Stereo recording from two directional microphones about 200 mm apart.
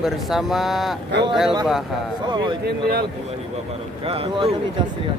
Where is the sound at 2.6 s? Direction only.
50° right (ahead or behind).